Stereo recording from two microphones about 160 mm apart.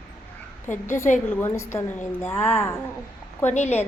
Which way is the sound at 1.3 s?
15° left (ahead or behind).